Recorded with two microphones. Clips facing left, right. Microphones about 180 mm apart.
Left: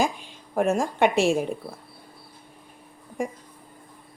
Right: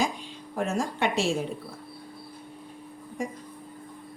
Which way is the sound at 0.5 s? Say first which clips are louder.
Left 6 dB; 50° left (ahead or behind).